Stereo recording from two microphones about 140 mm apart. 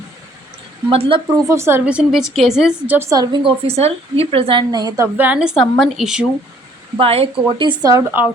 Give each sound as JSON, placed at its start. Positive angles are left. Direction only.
{"t": 0.9, "sound": "a woman's voice", "side_deg": -40}
{"t": 1.5, "sound": "a woman's voice", "side_deg": -20}
{"t": 3.1, "sound": "a woman's voice", "side_deg": -30}
{"t": 5.1, "sound": "a woman's voice", "side_deg": -10}
{"t": 7.0, "sound": "a woman's voice", "side_deg": -45}